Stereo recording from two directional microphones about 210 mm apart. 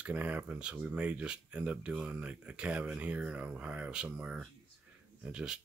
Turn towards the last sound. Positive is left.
turn(degrees=-5)  # may be behind; listen again after turning